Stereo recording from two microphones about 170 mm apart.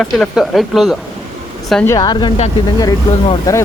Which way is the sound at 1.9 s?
25° left (ahead or behind).